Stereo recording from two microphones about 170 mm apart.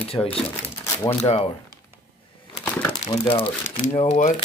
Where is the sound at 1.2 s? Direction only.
40° left (ahead or behind).